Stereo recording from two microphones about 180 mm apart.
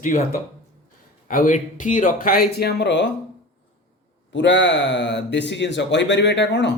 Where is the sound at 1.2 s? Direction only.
45° left (ahead or behind); by 3.1 s 80° left.